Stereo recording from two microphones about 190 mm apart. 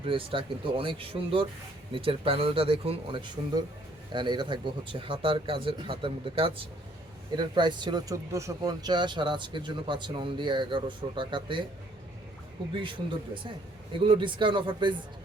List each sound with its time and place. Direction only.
0.0 s speech: 30° right (ahead or behind)
12.7 s speech: 25° right (ahead or behind)